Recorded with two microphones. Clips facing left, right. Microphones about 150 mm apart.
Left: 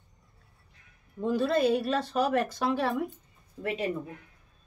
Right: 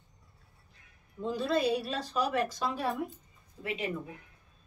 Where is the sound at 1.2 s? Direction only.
55° left (ahead or behind).